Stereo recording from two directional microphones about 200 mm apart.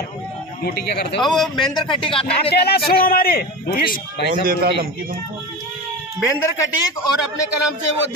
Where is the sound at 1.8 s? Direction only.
25° left (ahead or behind).